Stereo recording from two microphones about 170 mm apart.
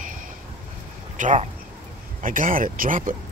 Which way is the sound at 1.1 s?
45° right (ahead or behind).